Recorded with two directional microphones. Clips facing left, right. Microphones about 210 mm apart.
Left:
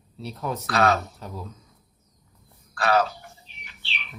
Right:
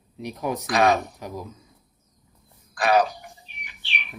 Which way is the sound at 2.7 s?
15° right (ahead or behind).